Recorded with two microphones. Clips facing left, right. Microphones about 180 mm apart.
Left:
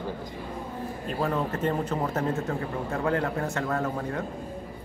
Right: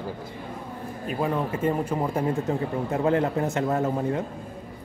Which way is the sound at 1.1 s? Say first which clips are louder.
Right 2 dB; 10° right (ahead or behind).